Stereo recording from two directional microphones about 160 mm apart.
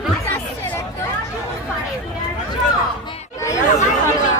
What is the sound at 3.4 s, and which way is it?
Speech, 20° left (ahead or behind).